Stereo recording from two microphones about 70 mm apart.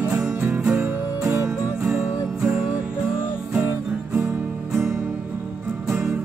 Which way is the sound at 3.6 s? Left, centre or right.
Right.